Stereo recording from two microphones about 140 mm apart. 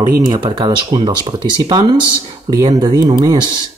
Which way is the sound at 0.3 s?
30° right (ahead or behind).